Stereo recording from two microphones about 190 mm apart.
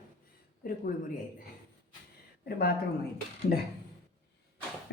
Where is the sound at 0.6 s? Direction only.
50° left (ahead or behind).